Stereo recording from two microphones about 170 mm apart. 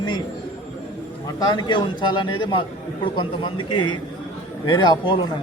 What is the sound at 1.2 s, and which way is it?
Speech, 25° left (ahead or behind).